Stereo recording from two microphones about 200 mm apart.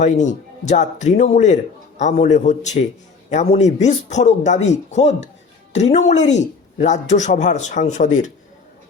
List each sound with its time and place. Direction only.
0.0 s speech: 35° left (ahead or behind)